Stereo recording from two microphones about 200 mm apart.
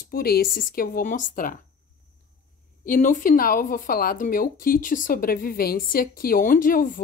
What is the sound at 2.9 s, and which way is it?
Speech, 40° left (ahead or behind).